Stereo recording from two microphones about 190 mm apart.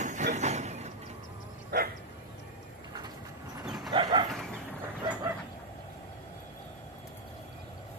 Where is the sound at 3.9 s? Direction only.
25° right (ahead or behind).